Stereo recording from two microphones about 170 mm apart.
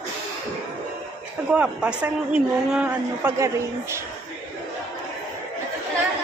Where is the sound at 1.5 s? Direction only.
5° right (ahead or behind).